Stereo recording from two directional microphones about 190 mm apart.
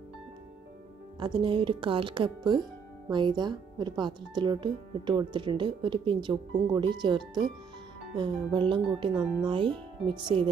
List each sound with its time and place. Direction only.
1.2 s speech: 25° right (ahead or behind)